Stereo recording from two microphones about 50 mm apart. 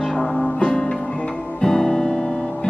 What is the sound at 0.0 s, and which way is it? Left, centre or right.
Music, centre.